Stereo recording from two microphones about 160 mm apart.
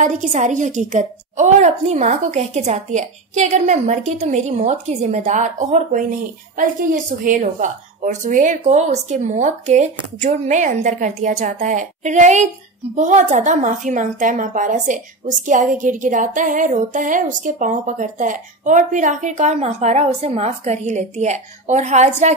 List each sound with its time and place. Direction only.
0.0 s a woman's voice: 45° right (ahead or behind)